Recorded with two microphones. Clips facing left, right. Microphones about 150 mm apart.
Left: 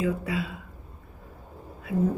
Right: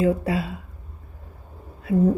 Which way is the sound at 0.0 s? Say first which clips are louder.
Right 6 dB; 40° right (ahead or behind).